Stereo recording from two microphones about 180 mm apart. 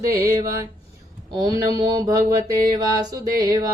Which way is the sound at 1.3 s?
20° right (ahead or behind).